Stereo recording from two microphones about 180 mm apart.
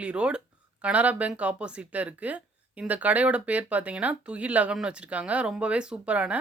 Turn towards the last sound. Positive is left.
turn(degrees=-5)  # may be behind; listen again after turning